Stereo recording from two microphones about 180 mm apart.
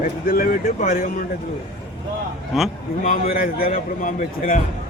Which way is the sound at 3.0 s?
50° left (ahead or behind).